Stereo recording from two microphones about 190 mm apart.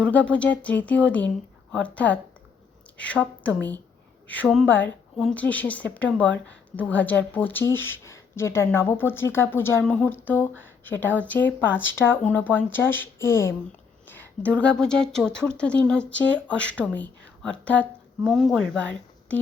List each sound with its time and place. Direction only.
0.3 s speech: 5° left (ahead or behind)
6.2 s a woman's voice: 75° left (ahead or behind)
6.7 s speech: 10° left (ahead or behind)
16.0 s a woman's voice: 70° left (ahead or behind)
16.5 s speech: 5° left (ahead or behind)